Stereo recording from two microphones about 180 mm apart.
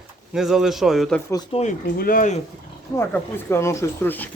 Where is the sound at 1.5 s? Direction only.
40° left (ahead or behind).